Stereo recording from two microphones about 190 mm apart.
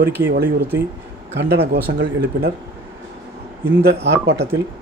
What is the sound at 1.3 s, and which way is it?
Speech, 65° right (ahead or behind).